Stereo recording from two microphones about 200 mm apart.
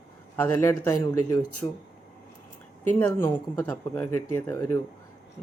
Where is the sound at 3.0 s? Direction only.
10° left (ahead or behind).